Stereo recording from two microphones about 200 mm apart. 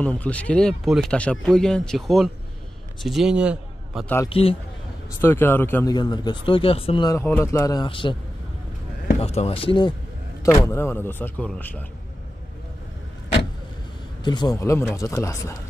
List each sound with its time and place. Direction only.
0.0 s a man's voice: 5° left (ahead or behind)
4.0 s speech: 10° left (ahead or behind)
4.3 s speech: 30° left (ahead or behind)
5.2 s speech: 10° left (ahead or behind)
9.2 s speech: 30° left (ahead or behind); by 11.8 s 5° left (ahead or behind)
14.2 s speech: 20° left (ahead or behind)